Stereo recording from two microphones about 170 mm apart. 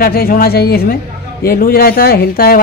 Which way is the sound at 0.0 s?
60° left (ahead or behind).